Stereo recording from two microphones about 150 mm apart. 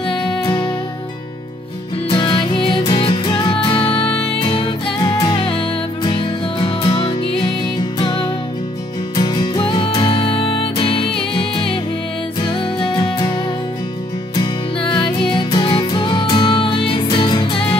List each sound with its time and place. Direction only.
0.1 s music: 30° left (ahead or behind)
2.0 s music: 30° left (ahead or behind)